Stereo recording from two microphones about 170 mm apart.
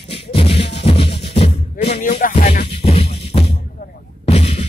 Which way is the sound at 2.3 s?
40° left (ahead or behind).